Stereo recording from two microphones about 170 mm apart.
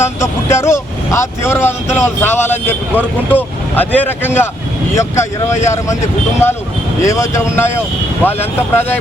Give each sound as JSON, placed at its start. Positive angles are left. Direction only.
{"t": 0.0, "sound": "speech", "side_deg": 15}